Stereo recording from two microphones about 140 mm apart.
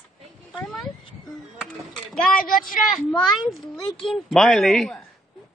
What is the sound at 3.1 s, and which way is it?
Speech, centre (ahead or behind).